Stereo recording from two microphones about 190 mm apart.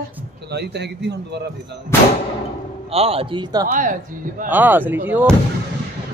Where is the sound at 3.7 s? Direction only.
45° right (ahead or behind).